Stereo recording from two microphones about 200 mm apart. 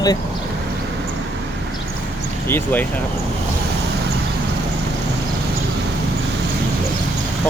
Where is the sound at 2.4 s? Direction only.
10° left (ahead or behind).